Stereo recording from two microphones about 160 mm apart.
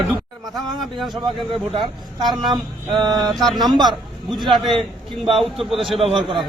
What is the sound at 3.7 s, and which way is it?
A man's voice, 25° right (ahead or behind).